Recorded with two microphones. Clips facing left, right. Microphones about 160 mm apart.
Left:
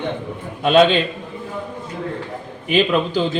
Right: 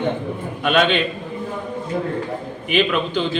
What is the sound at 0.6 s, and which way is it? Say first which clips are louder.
Speech: left 4 dB; 30° left (ahead or behind).